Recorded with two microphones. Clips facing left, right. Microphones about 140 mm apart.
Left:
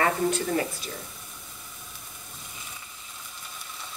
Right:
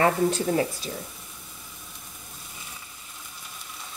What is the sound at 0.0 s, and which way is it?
Speech, 35° right (ahead or behind).